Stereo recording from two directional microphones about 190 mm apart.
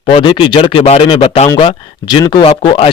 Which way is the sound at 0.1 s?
30° left (ahead or behind).